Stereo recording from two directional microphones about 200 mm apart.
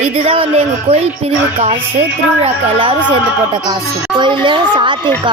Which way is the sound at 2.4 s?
25° right (ahead or behind).